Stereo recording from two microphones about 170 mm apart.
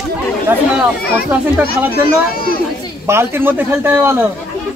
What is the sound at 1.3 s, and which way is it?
Speech, 10° right (ahead or behind).